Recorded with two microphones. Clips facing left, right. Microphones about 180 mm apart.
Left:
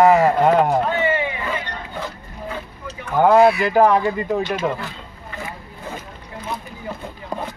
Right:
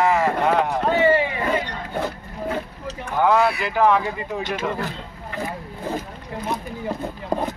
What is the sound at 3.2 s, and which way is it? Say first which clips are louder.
Speech: left 6 dB; 45° left (ahead or behind).